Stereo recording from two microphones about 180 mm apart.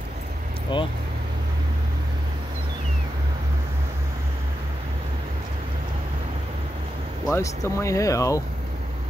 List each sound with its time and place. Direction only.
0.7 s speech: 25° left (ahead or behind)
7.3 s speech: 15° left (ahead or behind)